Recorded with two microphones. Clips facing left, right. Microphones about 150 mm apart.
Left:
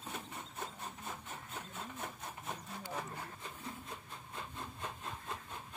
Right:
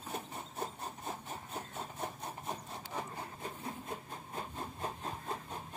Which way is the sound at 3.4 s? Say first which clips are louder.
Right 4 dB; 50° right (ahead or behind).